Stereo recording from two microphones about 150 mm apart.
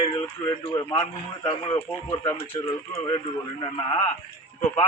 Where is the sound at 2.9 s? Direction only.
35° left (ahead or behind).